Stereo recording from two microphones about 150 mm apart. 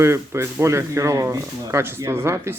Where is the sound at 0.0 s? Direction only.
15° right (ahead or behind).